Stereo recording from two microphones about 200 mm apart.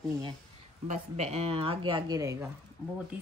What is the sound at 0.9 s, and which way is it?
A woman's voice, 35° right (ahead or behind).